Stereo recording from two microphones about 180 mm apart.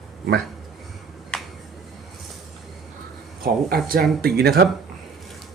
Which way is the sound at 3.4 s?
55° right (ahead or behind).